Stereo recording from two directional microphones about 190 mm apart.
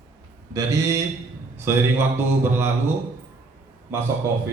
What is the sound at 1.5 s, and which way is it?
Speech, 10° right (ahead or behind).